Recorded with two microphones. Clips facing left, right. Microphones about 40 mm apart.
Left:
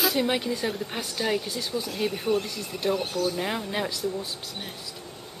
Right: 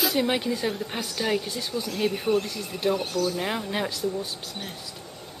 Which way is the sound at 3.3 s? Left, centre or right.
Centre.